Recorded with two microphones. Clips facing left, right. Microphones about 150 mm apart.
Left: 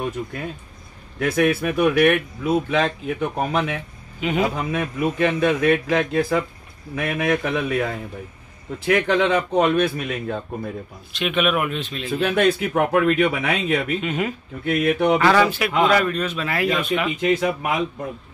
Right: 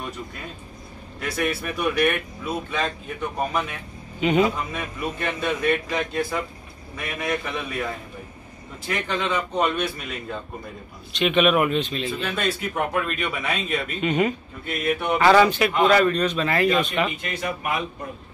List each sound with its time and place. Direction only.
1.2 s speech: 60° left (ahead or behind)
4.2 s speech: centre (ahead or behind)
4.6 s speech: 65° left (ahead or behind)
7.0 s speech: 60° left (ahead or behind)
8.8 s speech: 85° left; by 10.3 s 60° left (ahead or behind)
11.1 s speech: centre (ahead or behind)
12.1 s speech: 60° left (ahead or behind); by 13.9 s 75° left (ahead or behind)
14.0 s speech: centre (ahead or behind)
14.6 s speech: 80° left
15.1 s speech: centre (ahead or behind)
17.2 s speech: 90° left